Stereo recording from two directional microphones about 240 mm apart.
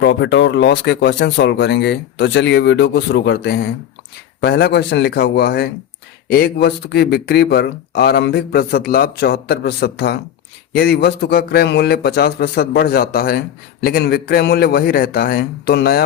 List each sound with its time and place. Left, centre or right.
0.0 s speech: left